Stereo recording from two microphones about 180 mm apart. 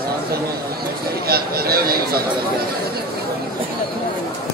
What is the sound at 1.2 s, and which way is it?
Speech, 60° right (ahead or behind).